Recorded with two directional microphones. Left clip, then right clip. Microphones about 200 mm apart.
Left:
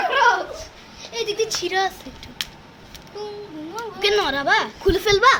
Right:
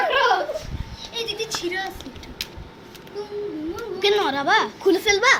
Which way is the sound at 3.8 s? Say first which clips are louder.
Left 1 dB; 25° left (ahead or behind).